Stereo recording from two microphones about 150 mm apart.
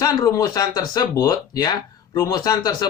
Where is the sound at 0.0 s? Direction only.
25° left (ahead or behind).